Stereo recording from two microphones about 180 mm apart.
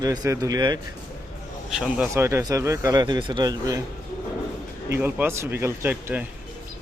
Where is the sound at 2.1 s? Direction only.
15° right (ahead or behind).